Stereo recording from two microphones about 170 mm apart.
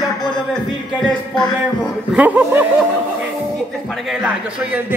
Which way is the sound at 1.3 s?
25° left (ahead or behind).